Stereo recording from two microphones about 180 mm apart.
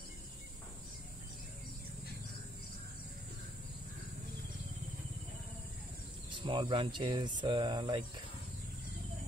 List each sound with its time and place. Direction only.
6.3 s speech: 25° right (ahead or behind)